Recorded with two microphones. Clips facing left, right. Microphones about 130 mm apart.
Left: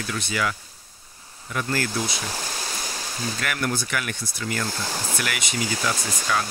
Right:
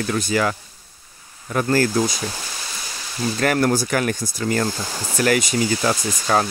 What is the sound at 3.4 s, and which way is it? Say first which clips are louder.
Speech: right 10 dB; 40° right (ahead or behind).